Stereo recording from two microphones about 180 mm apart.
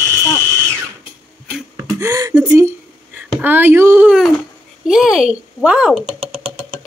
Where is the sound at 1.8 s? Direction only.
20° right (ahead or behind).